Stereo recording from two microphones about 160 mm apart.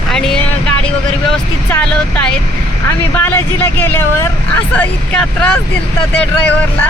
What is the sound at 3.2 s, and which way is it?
Speech, 15° left (ahead or behind).